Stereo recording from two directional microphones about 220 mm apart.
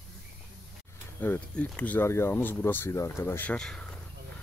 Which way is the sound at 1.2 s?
5° left (ahead or behind).